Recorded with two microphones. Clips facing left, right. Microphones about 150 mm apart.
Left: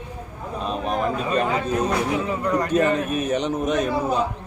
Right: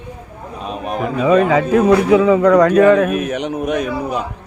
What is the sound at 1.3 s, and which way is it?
Music, 90° right.